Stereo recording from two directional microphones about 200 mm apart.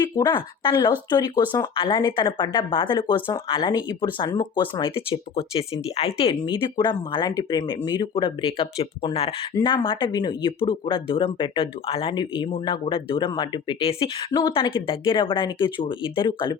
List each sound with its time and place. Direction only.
0.2 s speech: 20° left (ahead or behind)